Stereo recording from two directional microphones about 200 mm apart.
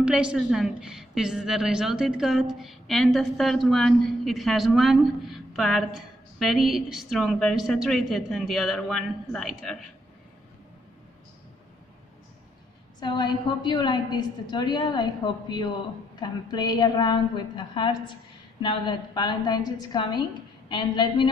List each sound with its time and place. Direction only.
0.0 s a woman's voice: 5° right (ahead or behind)
13.0 s a woman's voice: 20° left (ahead or behind)